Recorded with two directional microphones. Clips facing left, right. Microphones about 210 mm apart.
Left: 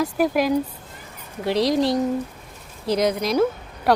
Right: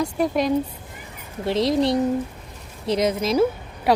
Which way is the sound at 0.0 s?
5° left (ahead or behind).